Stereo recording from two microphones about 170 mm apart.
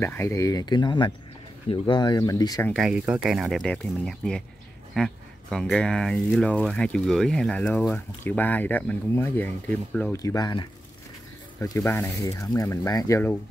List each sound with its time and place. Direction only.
0.0 s speech: 15° left (ahead or behind)
2.7 s speech: 5° right (ahead or behind)
10.1 s speech: 20° left (ahead or behind)